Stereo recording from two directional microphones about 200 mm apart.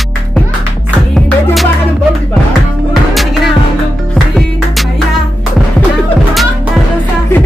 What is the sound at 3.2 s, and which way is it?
Music, centre (ahead or behind).